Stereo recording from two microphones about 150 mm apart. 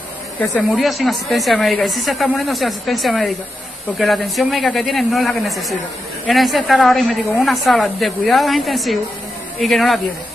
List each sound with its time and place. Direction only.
0.4 s a woman's voice: 5° left (ahead or behind)